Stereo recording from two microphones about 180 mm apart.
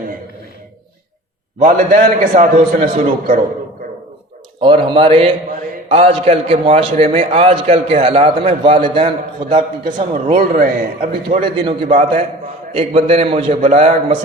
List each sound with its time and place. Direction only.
1.6 s a man's voice: 45° right (ahead or behind)
4.6 s a man's voice: 30° right (ahead or behind)
10.6 s a man's voice: 45° right (ahead or behind)
11.3 s a man's voice: 25° right (ahead or behind)